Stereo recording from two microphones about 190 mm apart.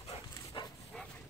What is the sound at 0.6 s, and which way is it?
Dog, 25° left (ahead or behind).